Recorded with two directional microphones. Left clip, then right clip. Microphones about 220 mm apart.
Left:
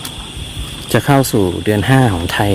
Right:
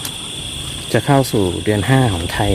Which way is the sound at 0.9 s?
20° left (ahead or behind).